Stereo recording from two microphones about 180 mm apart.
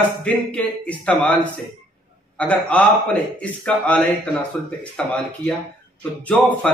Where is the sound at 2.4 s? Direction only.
5° left (ahead or behind).